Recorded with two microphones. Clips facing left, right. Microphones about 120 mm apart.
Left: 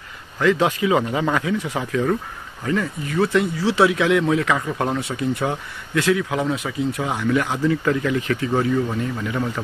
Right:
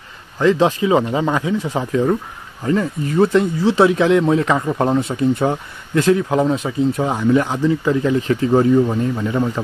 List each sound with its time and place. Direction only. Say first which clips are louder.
0.4 s speech: right 4 dB; 30° right (ahead or behind)
1.6 s speech: right 4 dB; 35° right (ahead or behind)
1.9 s speech: right 4 dB; 20° right (ahead or behind); by 7.0 s 40° right (ahead or behind)
7.0 s speech: right 4 dB; 25° right (ahead or behind)
7.6 s speech: right 3 dB; 15° right (ahead or behind)
8.0 s speech: right 5 dB; 30° right (ahead or behind)